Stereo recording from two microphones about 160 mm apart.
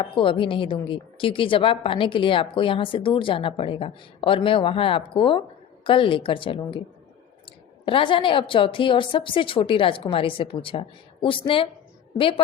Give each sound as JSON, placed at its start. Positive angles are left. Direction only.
{"t": 0.0, "sound": "a woman's voice", "side_deg": 30}
{"t": 7.9, "sound": "a woman's voice", "side_deg": 30}